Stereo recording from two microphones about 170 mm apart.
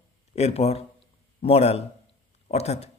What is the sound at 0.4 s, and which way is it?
A man's voice, 40° left (ahead or behind).